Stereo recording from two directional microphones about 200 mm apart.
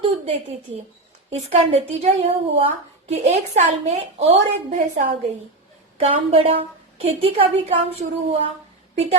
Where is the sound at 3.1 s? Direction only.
35° right (ahead or behind).